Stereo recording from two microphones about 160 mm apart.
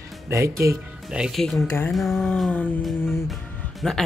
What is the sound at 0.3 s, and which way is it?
Speech, 20° right (ahead or behind).